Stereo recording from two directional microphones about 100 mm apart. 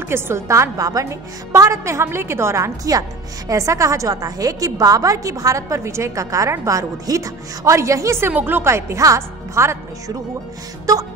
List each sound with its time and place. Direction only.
0.1 s a woman's voice: 30° right (ahead or behind)
8.3 s speech: 20° right (ahead or behind)